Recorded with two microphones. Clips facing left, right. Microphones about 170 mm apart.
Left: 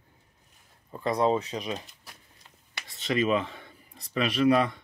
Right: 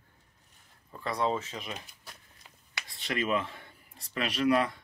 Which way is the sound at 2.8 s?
20° left (ahead or behind).